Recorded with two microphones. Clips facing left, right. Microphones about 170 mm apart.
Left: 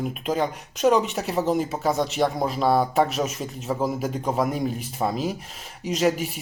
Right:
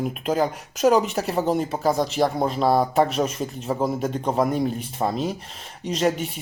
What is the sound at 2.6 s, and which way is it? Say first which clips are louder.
Speech: right 1 dB; 30° right (ahead or behind).